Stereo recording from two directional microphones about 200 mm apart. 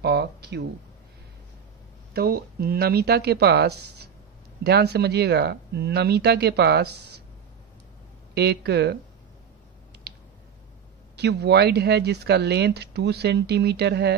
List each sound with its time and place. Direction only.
0.0 s speech: 55° right (ahead or behind)
2.1 s speech: 50° right (ahead or behind)
8.4 s speech: 55° right (ahead or behind)
11.1 s speech: 55° right (ahead or behind)